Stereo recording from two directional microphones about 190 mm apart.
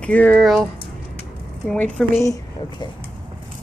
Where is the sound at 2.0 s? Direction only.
15° left (ahead or behind).